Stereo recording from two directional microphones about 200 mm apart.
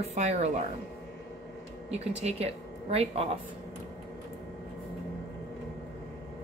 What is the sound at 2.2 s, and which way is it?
Speech, 30° right (ahead or behind).